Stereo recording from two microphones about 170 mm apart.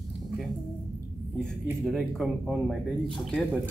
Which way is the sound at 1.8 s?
Centre (ahead or behind).